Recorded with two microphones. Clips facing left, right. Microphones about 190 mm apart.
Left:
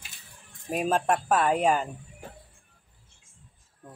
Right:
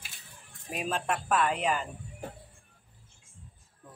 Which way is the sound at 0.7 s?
45° left (ahead or behind).